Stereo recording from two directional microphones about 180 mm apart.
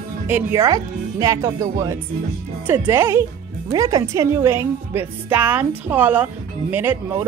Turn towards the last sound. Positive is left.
turn(degrees=-15)  # may be behind; listen again after turning